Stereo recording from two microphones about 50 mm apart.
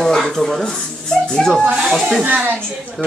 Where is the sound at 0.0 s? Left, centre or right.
Centre.